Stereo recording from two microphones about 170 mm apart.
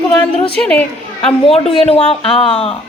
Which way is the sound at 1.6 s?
35° left (ahead or behind).